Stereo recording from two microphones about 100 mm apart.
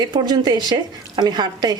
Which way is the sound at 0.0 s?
45° right (ahead or behind).